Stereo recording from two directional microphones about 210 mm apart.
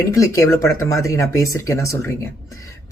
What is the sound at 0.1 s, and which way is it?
Speech, 15° left (ahead or behind).